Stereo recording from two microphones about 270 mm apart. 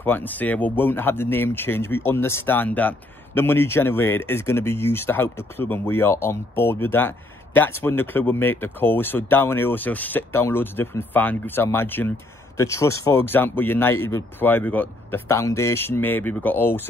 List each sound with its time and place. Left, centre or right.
0.0 s speech: centre